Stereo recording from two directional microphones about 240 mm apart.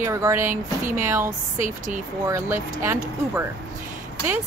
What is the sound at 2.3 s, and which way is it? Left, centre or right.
Speech, centre.